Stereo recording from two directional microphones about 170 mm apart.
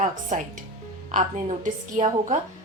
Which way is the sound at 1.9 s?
50° right (ahead or behind).